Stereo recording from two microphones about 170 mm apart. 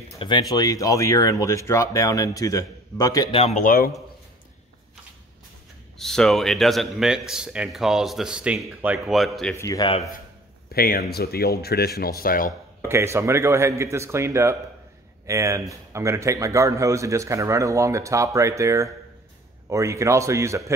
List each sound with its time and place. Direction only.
0.2 s speech: 25° left (ahead or behind)
3.3 s speech: 35° left (ahead or behind); by 3.9 s 55° left (ahead or behind)
5.9 s a man's voice: centre (ahead or behind)
9.6 s speech: 20° left (ahead or behind)
10.7 s speech: 65° left (ahead or behind)
12.2 s speech: 55° left (ahead or behind)
12.8 s a man's voice: 15° right (ahead or behind)